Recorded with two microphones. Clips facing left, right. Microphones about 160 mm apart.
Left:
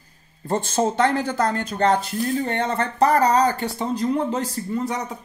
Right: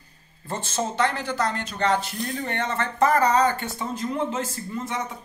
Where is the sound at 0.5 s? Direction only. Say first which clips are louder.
Left 7 dB; 45° left (ahead or behind).